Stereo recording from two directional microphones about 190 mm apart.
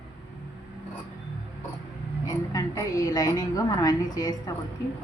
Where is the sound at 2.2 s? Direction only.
20° left (ahead or behind).